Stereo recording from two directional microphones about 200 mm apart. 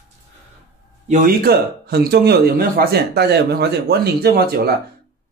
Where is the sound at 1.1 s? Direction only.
45° right (ahead or behind).